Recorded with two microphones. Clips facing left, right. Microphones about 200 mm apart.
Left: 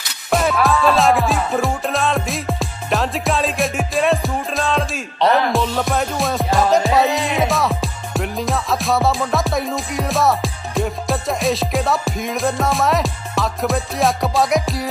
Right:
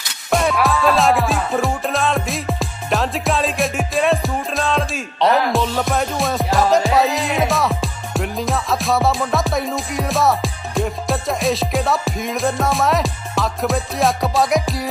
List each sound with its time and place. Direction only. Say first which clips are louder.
0.3 s music: left 1 dB; centre (ahead or behind)